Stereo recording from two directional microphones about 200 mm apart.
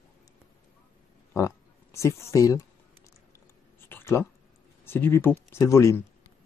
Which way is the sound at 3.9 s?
10° left (ahead or behind).